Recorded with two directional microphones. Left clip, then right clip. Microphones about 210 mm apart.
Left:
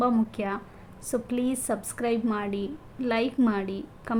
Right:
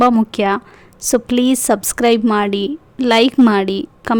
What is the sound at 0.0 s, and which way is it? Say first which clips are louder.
A woman's voice: right 13 dB; 50° right (ahead or behind).